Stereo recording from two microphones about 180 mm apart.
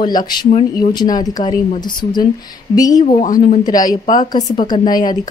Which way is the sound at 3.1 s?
45° left (ahead or behind).